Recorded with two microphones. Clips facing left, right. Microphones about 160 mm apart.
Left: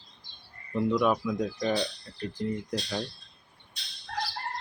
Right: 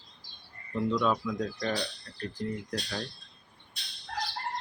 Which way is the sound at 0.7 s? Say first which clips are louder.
Left 3 dB; 15° left (ahead or behind).